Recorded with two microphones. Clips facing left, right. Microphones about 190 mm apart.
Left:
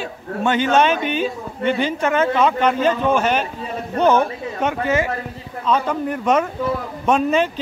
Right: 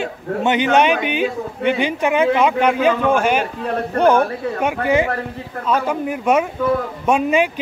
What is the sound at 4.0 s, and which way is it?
Speech, 10° right (ahead or behind).